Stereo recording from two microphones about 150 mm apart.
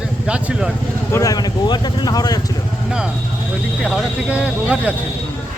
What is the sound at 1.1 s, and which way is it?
Speech, 25° left (ahead or behind).